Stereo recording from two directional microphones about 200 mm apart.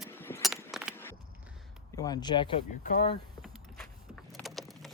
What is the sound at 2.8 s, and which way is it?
Speech, 40° left (ahead or behind).